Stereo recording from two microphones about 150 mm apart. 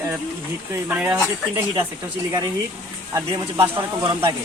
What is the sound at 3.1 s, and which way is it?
Speech, 25° right (ahead or behind).